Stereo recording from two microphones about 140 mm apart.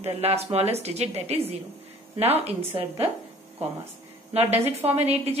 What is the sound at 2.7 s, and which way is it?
Speech, 45° right (ahead or behind).